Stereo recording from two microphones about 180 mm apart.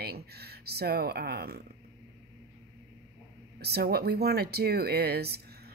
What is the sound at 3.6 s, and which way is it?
A woman's voice, 60° right (ahead or behind).